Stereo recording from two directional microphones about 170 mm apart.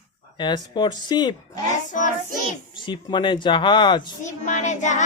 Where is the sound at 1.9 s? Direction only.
45° left (ahead or behind).